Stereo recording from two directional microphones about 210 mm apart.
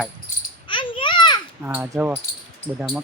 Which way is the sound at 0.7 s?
25° left (ahead or behind).